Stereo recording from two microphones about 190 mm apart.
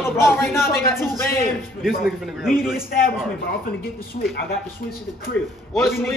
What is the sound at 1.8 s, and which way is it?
A man's voice, centre (ahead or behind).